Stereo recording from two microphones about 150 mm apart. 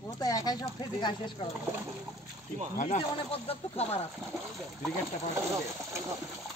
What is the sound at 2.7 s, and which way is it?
Speech, 55° left (ahead or behind).